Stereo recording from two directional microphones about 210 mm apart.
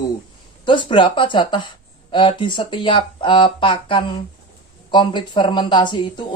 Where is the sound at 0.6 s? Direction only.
20° left (ahead or behind).